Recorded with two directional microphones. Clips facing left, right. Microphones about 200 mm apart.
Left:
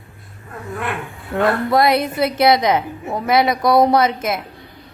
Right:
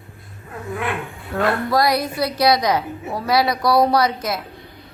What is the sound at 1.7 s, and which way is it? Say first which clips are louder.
A woman's voice: left 3 dB; 25° left (ahead or behind).